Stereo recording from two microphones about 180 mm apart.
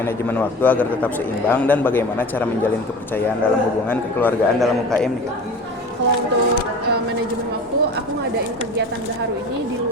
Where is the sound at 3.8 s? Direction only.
10° left (ahead or behind).